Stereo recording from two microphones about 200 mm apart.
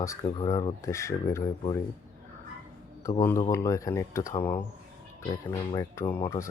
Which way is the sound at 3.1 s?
15° left (ahead or behind).